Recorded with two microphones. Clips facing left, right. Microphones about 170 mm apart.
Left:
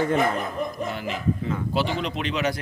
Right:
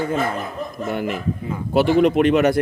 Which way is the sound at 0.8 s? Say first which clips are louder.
Right 4 dB; 55° right (ahead or behind).